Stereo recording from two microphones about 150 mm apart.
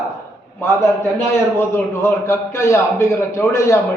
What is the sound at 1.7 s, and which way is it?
A man's voice, 15° left (ahead or behind).